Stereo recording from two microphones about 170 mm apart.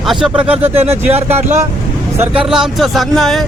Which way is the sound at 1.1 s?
40° right (ahead or behind).